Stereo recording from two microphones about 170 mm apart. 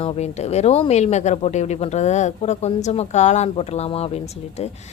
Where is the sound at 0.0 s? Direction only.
35° left (ahead or behind).